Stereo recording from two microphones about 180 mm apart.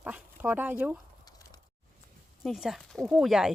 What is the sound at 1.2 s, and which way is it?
Plop, 20° left (ahead or behind).